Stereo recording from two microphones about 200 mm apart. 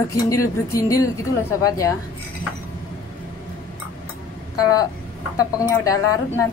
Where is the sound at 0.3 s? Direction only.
15° left (ahead or behind).